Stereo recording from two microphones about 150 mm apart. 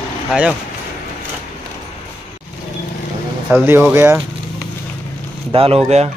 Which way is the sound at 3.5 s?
15° right (ahead or behind).